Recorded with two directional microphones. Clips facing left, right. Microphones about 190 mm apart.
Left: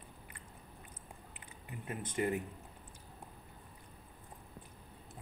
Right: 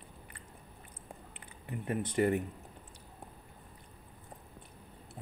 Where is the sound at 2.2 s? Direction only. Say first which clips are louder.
Right 5 dB; 50° right (ahead or behind).